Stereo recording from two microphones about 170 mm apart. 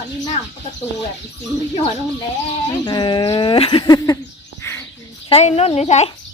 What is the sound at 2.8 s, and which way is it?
Speech, 25° left (ahead or behind).